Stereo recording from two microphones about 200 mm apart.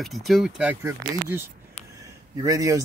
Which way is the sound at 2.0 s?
15° right (ahead or behind).